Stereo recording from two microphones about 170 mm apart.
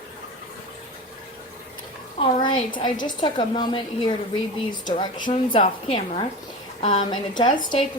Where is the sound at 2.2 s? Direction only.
40° left (ahead or behind).